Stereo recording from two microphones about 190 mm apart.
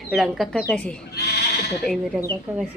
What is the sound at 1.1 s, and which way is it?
Sheep, 60° left (ahead or behind).